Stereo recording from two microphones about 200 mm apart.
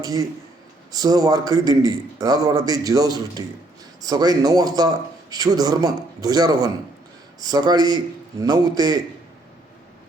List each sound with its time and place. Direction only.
0.0 s a man's voice: 15° right (ahead or behind)